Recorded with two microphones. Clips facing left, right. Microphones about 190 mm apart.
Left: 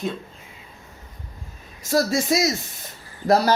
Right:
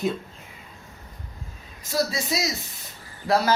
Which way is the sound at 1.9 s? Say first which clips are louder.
Left 6 dB; 50° left (ahead or behind).